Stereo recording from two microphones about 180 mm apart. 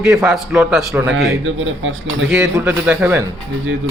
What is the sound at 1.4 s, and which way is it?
Speech, 90° right.